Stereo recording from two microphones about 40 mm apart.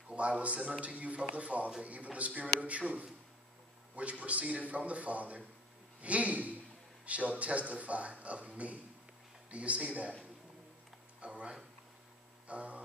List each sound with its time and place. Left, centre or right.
0.1 s a man's voice: right
3.9 s a man's voice: right
11.1 s a sound: right